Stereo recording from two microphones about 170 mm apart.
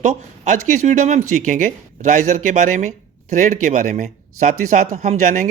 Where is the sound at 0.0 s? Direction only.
45° right (ahead or behind).